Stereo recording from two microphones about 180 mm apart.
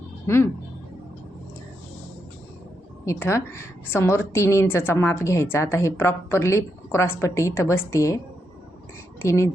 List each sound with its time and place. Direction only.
3.1 s a woman's voice: 15° left (ahead or behind)